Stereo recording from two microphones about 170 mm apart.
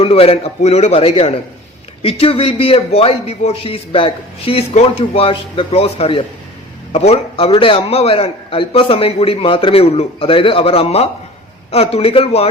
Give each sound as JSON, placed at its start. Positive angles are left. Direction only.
{"t": 0.0, "sound": "a man's voice", "side_deg": 35}